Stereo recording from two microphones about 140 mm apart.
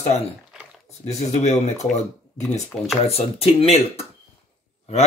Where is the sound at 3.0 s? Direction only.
45° left (ahead or behind).